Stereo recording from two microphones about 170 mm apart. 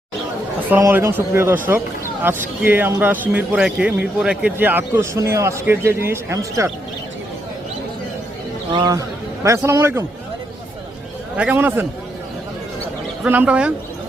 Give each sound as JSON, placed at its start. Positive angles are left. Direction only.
{"t": 0.7, "sound": "a man's voice", "side_deg": -15}
{"t": 8.7, "sound": "a man's voice", "side_deg": -20}
{"t": 11.3, "sound": "a man's voice", "side_deg": -10}
{"t": 13.2, "sound": "a man's voice", "side_deg": -10}